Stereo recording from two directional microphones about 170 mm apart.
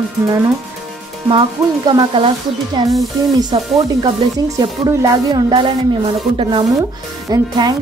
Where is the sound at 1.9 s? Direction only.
30° right (ahead or behind).